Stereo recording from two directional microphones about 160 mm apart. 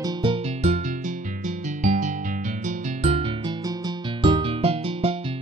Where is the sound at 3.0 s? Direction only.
35° right (ahead or behind).